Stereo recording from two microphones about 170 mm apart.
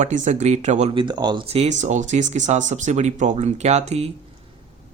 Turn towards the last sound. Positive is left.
turn(degrees=-40)  # may be behind; listen again after turning